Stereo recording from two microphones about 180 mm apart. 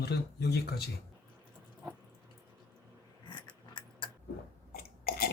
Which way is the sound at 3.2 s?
25° left (ahead or behind).